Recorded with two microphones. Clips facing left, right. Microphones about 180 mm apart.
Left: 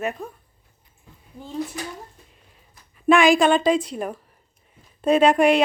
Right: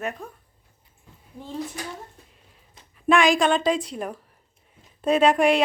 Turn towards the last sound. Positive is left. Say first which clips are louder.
# left 2 dB
turn(degrees=0)  # may be behind; listen again after turning